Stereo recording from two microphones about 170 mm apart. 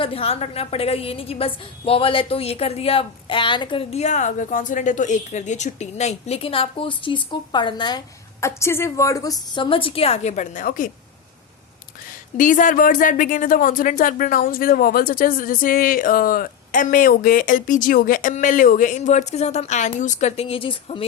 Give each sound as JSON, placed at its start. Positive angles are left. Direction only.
{"t": 0.0, "sound": "a woman's voice", "side_deg": 35}
{"t": 12.4, "sound": "speech", "side_deg": 50}